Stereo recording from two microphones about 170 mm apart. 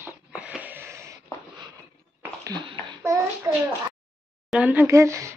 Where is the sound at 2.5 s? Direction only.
25° right (ahead or behind).